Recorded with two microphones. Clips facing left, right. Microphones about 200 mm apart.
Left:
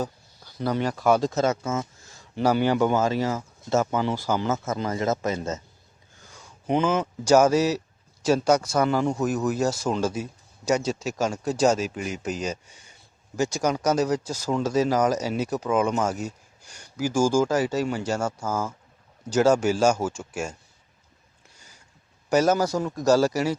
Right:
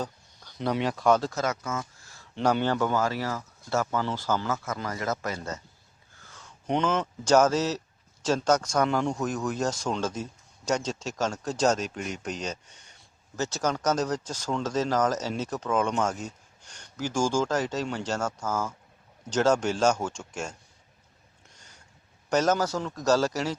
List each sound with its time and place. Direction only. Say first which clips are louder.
0.0 s speech: left 4 dB; 5° left (ahead or behind)
1.3 s speech: left 6 dB; 25° left (ahead or behind)
2.3 s speech: left 3 dB; 5° left (ahead or behind)
21.5 s a sound: left 2 dB; 10° left (ahead or behind)
22.3 s speech: left 4 dB; 10° left (ahead or behind)